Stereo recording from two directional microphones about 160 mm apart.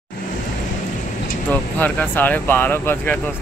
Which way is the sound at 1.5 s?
10° left (ahead or behind).